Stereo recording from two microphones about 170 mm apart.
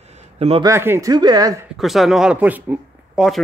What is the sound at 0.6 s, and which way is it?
Speech, 15° right (ahead or behind).